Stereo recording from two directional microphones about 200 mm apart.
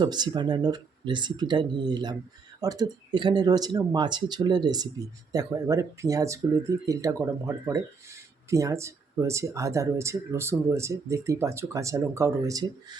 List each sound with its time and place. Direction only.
0.0 s speech: 20° right (ahead or behind)